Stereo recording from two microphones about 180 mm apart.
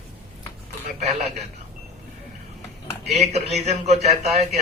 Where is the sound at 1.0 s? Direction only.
40° right (ahead or behind).